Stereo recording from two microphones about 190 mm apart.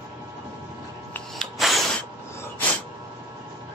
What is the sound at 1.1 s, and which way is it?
Rub, centre (ahead or behind).